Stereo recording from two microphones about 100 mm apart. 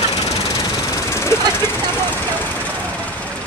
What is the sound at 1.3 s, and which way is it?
Jackhammer, 30° left (ahead or behind).